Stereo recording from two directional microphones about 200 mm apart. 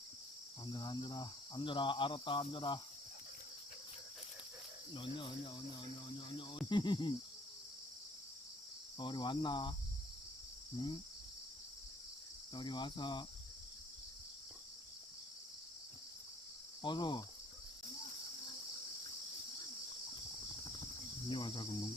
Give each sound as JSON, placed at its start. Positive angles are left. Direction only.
{"t": 0.6, "sound": "cricket", "side_deg": 20}
{"t": 4.9, "sound": "cricket", "side_deg": 25}
{"t": 6.7, "sound": "cricket", "side_deg": 20}
{"t": 9.0, "sound": "cricket", "side_deg": 20}
{"t": 10.8, "sound": "cricket", "side_deg": 20}
{"t": 12.5, "sound": "cricket", "side_deg": 20}
{"t": 16.8, "sound": "cricket", "side_deg": 20}
{"t": 21.2, "sound": "cricket", "side_deg": 25}